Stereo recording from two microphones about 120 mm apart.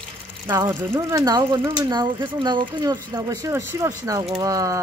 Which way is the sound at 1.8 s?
35° right (ahead or behind).